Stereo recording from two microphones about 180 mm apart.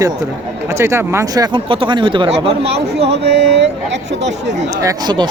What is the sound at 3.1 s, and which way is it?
Speech, 70° right (ahead or behind).